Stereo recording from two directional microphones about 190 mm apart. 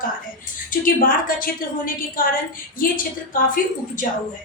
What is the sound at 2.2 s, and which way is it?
Speech, 50° left (ahead or behind).